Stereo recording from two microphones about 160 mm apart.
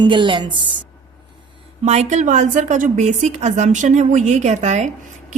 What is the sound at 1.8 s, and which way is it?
A woman's voice, 45° right (ahead or behind).